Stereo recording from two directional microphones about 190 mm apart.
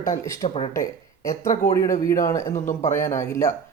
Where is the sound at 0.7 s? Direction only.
15° left (ahead or behind).